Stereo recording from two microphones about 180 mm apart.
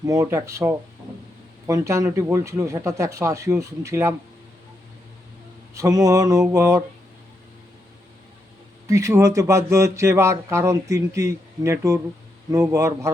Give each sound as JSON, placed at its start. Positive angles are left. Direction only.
{"t": 0.0, "sound": "speech", "side_deg": -20}
{"t": 5.7, "sound": "a sound", "side_deg": -20}
{"t": 8.9, "sound": "speech", "side_deg": -15}